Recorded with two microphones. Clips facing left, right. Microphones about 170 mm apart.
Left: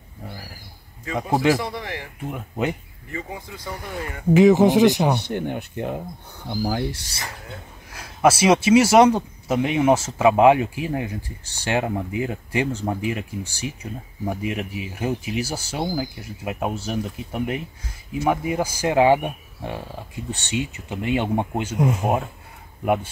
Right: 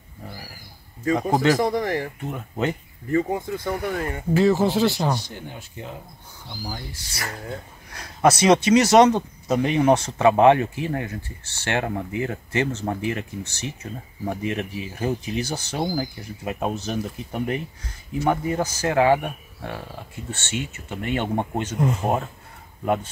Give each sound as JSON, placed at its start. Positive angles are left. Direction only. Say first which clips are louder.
{"t": 1.6, "sound": "speech", "louder": "right 8 dB", "side_deg": -45}
{"t": 2.2, "sound": "speech", "louder": "even", "side_deg": 10}
{"t": 3.1, "sound": "speech", "louder": "right 11 dB", "side_deg": -45}
{"t": 4.3, "sound": "speech", "louder": "left 5 dB", "side_deg": 15}
{"t": 5.1, "sound": "speech", "louder": "left 6 dB", "side_deg": 60}
{"t": 7.9, "sound": "speech", "louder": "left 1 dB", "side_deg": 5}